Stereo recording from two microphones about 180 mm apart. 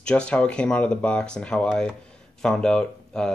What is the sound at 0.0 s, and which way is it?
Speech, 5° left (ahead or behind).